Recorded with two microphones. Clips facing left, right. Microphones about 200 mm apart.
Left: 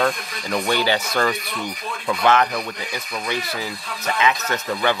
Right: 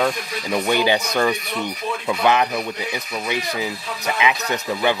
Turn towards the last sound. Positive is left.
turn(degrees=-15)  # may be behind; listen again after turning